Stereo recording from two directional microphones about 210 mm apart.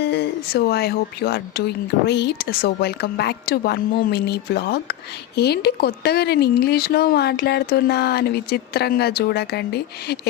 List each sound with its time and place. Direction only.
0.0 s speech: 50° left (ahead or behind)